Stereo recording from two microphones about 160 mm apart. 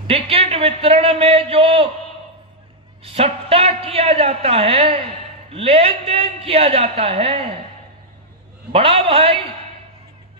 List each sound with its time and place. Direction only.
0.0 s a man's voice: 35° right (ahead or behind)
3.0 s a man's voice: 35° right (ahead or behind)
8.7 s a man's voice: 35° right (ahead or behind)